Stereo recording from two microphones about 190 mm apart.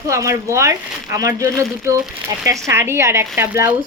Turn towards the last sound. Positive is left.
turn(degrees=-10)  # may be behind; listen again after turning